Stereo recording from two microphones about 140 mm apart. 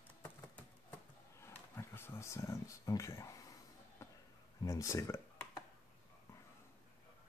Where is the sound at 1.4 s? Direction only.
15° left (ahead or behind).